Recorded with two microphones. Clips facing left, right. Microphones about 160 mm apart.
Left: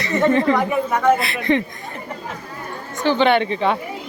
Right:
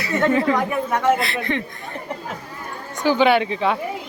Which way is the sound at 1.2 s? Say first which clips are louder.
Left 4 dB; 15° left (ahead or behind).